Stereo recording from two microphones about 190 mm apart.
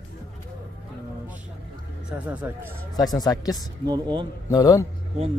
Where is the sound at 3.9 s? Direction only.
25° right (ahead or behind).